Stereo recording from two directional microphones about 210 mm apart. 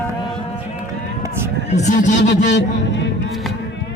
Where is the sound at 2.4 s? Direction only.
55° left (ahead or behind).